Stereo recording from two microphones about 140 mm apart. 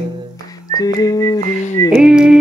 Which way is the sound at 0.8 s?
25° left (ahead or behind).